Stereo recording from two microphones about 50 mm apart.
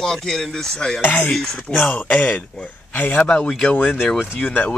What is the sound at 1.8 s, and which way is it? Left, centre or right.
Speech, left.